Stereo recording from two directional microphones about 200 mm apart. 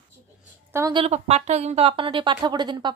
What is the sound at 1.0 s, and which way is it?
Speech, 30° right (ahead or behind).